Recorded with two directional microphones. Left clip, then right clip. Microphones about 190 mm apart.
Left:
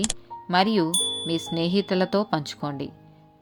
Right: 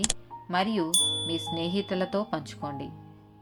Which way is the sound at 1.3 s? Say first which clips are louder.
Left 4 dB; 50° left (ahead or behind).